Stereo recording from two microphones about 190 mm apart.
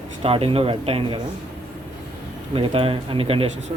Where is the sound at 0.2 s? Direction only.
30° right (ahead or behind).